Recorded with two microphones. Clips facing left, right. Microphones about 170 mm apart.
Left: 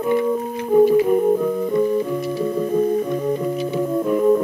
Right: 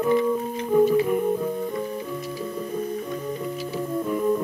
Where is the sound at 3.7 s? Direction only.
70° left (ahead or behind).